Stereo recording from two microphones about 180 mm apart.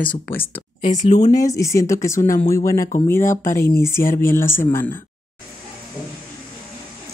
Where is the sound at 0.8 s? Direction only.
40° left (ahead or behind).